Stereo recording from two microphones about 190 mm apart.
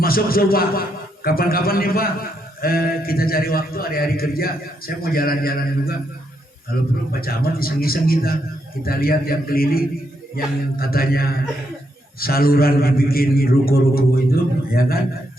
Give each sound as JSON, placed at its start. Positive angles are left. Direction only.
{"t": 0.0, "sound": "a man's voice", "side_deg": 50}